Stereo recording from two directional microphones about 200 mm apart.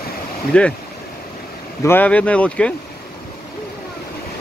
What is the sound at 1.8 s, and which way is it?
Speech, 10° left (ahead or behind).